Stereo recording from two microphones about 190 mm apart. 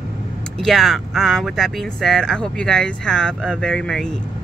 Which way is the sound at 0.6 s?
Centre (ahead or behind).